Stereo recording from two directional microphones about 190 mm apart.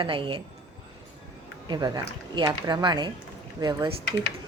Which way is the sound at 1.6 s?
20° right (ahead or behind).